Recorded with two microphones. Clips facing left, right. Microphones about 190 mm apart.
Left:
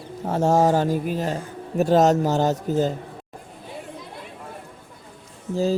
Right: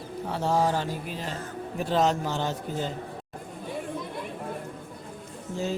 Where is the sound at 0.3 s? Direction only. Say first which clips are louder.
Left 7 dB; 45° left (ahead or behind).